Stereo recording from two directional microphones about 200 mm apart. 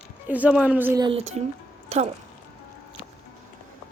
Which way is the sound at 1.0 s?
25° right (ahead or behind).